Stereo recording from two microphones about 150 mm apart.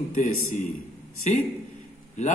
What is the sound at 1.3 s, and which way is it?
Speech, 50° left (ahead or behind).